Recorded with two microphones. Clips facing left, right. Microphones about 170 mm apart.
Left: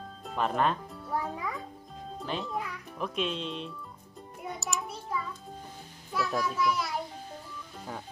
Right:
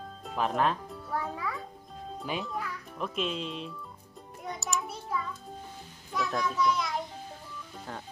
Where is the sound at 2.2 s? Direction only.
10° right (ahead or behind).